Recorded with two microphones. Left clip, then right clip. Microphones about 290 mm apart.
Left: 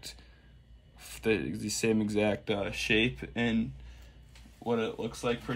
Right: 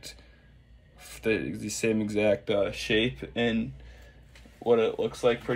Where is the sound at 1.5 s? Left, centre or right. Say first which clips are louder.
Right 1 dB; centre.